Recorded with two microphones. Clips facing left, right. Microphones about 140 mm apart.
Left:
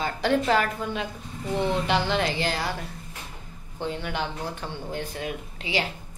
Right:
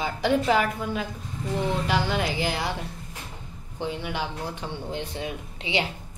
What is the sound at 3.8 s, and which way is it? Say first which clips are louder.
Speech: even; 10° right (ahead or behind).